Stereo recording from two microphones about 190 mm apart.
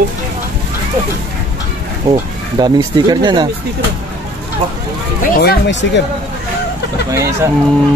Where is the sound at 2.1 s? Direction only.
25° right (ahead or behind).